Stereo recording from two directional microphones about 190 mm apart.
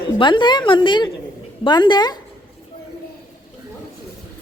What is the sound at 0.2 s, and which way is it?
A woman's voice, 25° left (ahead or behind).